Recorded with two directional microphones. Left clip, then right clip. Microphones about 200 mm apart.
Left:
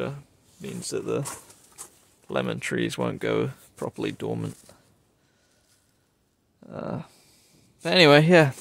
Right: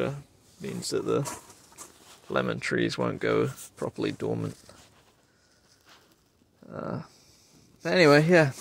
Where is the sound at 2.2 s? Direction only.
25° left (ahead or behind).